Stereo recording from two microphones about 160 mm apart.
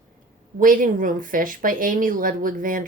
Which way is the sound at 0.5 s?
60° right (ahead or behind).